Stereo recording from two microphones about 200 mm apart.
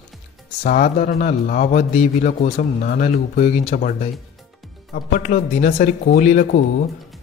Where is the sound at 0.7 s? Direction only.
40° left (ahead or behind).